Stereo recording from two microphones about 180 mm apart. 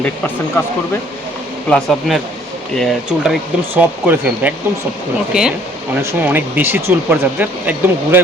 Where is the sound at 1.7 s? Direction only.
Centre (ahead or behind).